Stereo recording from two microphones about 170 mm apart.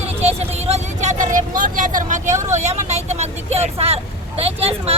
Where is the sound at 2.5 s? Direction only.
40° right (ahead or behind).